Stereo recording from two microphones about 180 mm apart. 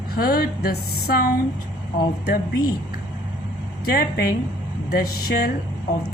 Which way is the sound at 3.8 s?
55° left (ahead or behind).